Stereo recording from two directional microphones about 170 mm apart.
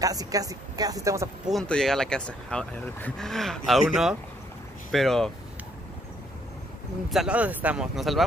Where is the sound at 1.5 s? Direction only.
5° left (ahead or behind).